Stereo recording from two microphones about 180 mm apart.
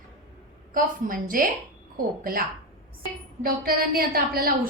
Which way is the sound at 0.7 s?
50° right (ahead or behind).